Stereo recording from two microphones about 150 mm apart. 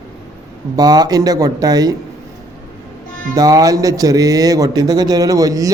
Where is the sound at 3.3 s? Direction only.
25° right (ahead or behind).